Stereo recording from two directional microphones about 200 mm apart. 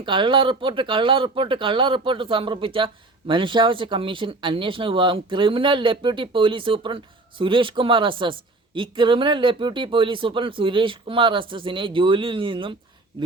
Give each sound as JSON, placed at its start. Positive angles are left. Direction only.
{"t": 0.0, "sound": "speech", "side_deg": -25}